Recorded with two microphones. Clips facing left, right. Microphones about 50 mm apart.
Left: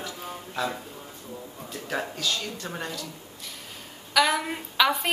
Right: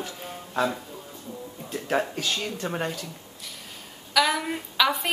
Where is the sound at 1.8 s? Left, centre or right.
Right.